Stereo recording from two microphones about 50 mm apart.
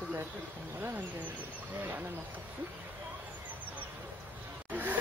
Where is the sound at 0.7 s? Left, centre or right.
Right.